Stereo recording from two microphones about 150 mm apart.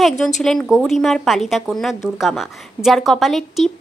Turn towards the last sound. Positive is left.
turn(degrees=0)  # may be behind; listen again after turning